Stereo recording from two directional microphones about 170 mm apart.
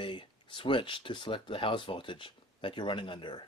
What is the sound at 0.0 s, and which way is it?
Speech, 30° left (ahead or behind).